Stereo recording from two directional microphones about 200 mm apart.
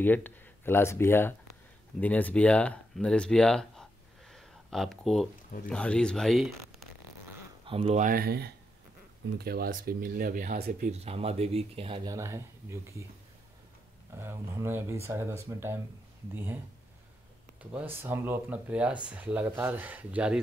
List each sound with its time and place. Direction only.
0.0 s speech: 10° left (ahead or behind)
7.6 s speech: 30° right (ahead or behind)
11.1 s speech: 30° right (ahead or behind); by 13.0 s 15° right (ahead or behind)
14.1 s speech: 15° right (ahead or behind)
17.6 s speech: 10° right (ahead or behind)